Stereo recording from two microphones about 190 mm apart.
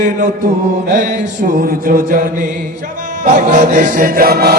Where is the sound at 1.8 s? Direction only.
45° right (ahead or behind).